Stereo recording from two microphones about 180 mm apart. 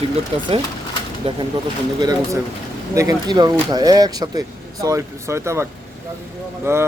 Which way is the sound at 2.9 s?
15° right (ahead or behind).